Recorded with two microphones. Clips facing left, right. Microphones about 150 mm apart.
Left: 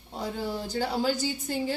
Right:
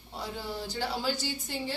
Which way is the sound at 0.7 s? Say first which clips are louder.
Left 5 dB; 45° left (ahead or behind).